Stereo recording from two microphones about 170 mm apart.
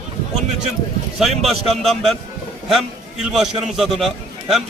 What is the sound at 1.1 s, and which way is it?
A man's voice, centre (ahead or behind).